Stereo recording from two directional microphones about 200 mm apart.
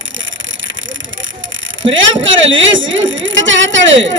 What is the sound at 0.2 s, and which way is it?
Speech, 70° right (ahead or behind).